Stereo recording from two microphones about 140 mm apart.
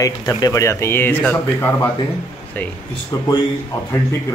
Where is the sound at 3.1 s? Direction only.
25° left (ahead or behind).